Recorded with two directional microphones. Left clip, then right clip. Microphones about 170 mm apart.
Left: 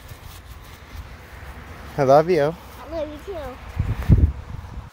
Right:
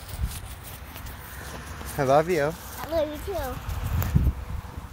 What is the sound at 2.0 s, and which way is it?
Speech, 65° left (ahead or behind).